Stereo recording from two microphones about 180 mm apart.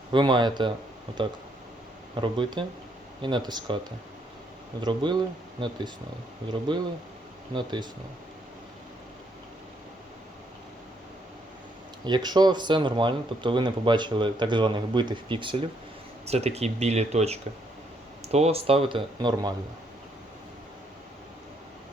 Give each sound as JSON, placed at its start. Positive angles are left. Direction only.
{"t": 0.1, "sound": "speech", "side_deg": -25}
{"t": 2.2, "sound": "speech", "side_deg": -25}
{"t": 4.8, "sound": "speech", "side_deg": -25}
{"t": 12.0, "sound": "speech", "side_deg": -25}